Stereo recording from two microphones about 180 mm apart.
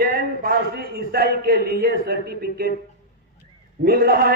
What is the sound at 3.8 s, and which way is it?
Speech, 55° right (ahead or behind).